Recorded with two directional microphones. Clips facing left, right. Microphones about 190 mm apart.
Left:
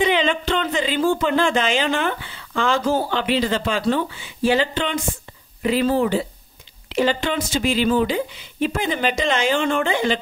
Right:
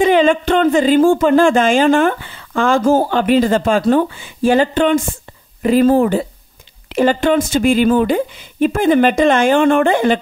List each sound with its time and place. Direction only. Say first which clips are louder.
0.0 s speech: right 8 dB; 45° right (ahead or behind)